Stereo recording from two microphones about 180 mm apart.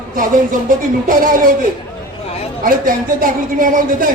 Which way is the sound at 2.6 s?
50° right (ahead or behind).